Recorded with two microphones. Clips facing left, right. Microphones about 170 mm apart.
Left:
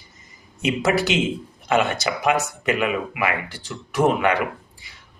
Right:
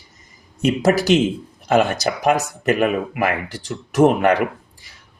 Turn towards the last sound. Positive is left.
turn(degrees=-40)  # may be behind; listen again after turning